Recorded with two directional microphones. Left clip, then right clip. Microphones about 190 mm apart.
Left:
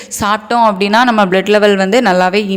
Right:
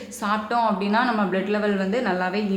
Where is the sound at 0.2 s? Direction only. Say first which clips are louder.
Left 11 dB; 50° left (ahead or behind).